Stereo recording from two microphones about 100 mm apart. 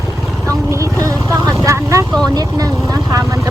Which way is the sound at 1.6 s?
30° right (ahead or behind).